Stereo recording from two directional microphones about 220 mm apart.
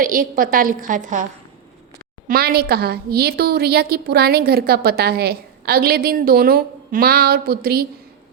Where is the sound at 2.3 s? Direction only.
45° right (ahead or behind).